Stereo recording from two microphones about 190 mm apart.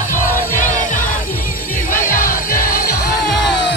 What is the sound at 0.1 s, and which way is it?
Music, 40° left (ahead or behind).